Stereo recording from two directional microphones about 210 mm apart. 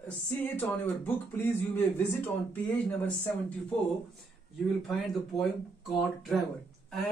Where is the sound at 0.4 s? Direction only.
10° left (ahead or behind).